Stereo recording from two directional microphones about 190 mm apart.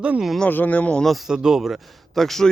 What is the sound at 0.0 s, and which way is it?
Speech, 5° right (ahead or behind).